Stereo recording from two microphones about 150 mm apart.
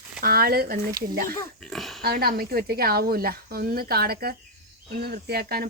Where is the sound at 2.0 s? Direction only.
90° right.